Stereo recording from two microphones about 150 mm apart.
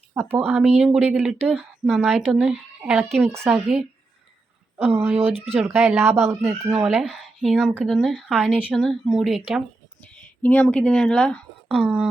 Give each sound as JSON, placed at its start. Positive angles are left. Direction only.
{"t": 0.1, "sound": "speech", "side_deg": -15}
{"t": 4.8, "sound": "speech", "side_deg": -15}
{"t": 8.4, "sound": "speech", "side_deg": -10}
{"t": 11.8, "sound": "speech", "side_deg": -5}